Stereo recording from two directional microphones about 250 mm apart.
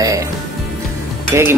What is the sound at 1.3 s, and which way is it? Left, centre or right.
Speech, centre.